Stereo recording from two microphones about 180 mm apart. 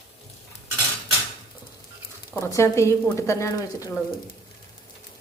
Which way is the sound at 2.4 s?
15° left (ahead or behind).